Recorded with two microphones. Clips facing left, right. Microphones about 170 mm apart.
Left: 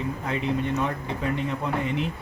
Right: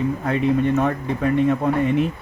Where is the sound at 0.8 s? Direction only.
50° right (ahead or behind).